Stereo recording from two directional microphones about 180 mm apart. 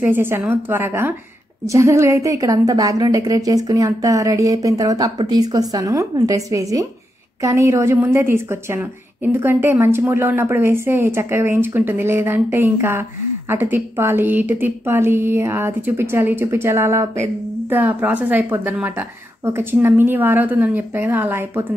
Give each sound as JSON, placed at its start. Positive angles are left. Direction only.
{"t": 0.0, "sound": "a woman's voice", "side_deg": -10}